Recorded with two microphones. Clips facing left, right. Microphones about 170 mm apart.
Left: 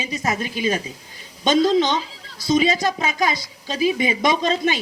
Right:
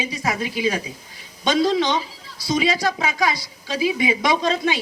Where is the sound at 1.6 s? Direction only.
20° left (ahead or behind).